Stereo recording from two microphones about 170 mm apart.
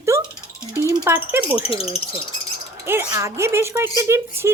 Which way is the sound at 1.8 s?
35° left (ahead or behind).